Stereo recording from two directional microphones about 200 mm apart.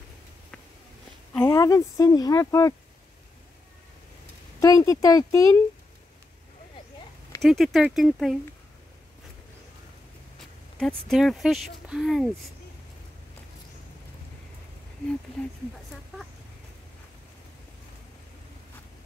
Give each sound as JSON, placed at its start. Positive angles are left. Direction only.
{"t": 1.3, "sound": "speech", "side_deg": 15}
{"t": 4.6, "sound": "speech", "side_deg": 15}
{"t": 7.4, "sound": "speech", "side_deg": 0}
{"t": 11.1, "sound": "speech", "side_deg": 0}